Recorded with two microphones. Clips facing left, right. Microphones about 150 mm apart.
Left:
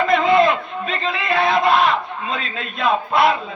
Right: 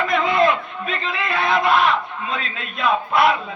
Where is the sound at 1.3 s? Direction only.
40° left (ahead or behind).